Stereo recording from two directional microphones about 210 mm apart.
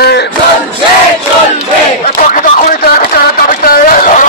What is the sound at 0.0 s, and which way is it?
Battle cry, 50° left (ahead or behind).